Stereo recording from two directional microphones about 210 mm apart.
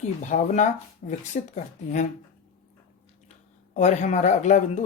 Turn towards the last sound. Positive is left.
turn(degrees=35)  # may be behind; listen again after turning